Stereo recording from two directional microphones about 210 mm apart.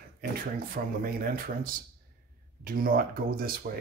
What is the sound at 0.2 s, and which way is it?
Speech, 45° right (ahead or behind).